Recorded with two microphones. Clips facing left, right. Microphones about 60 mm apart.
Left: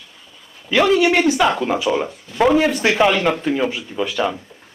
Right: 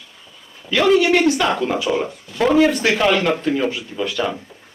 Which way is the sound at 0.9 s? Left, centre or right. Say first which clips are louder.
Even; centre.